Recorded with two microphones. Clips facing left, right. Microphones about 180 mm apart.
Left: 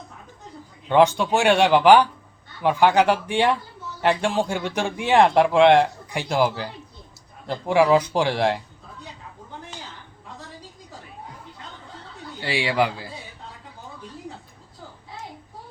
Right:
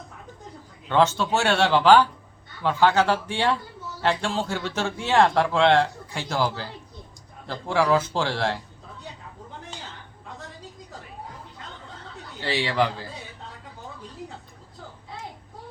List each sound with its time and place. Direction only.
0.9 s a man's voice: 15° left (ahead or behind)
12.4 s a man's voice: 10° left (ahead or behind)